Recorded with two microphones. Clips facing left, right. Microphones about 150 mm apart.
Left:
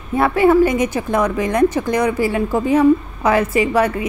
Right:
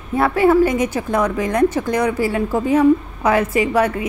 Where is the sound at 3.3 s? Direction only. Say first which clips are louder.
Left 1 dB; centre (ahead or behind).